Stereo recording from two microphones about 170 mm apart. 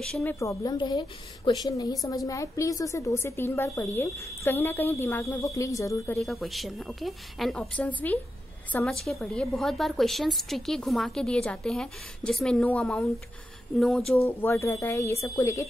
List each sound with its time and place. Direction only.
0.0 s a woman's voice: 5° left (ahead or behind)
6.1 s a woman's voice: centre (ahead or behind)
14.2 s a woman's voice: 15° left (ahead or behind)